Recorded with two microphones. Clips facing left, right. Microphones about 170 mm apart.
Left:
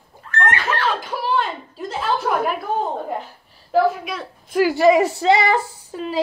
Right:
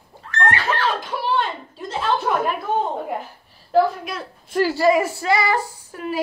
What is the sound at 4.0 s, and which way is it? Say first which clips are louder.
Speech: left 1 dB; centre (ahead or behind).